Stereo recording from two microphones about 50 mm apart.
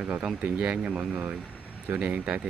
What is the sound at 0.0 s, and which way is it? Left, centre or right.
Speech, centre.